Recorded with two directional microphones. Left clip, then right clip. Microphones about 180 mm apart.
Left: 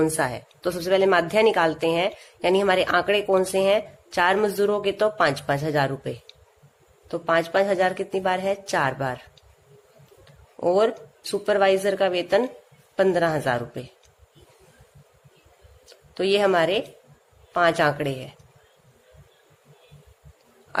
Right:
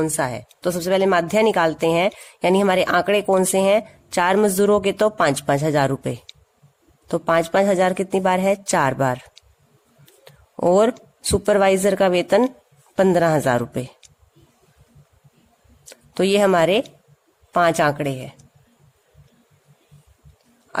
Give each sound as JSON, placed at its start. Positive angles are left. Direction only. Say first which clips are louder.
{"t": 0.0, "sound": "speech", "louder": "right 1 dB", "side_deg": -30}
{"t": 16.1, "sound": "speech", "louder": "right 3 dB", "side_deg": -45}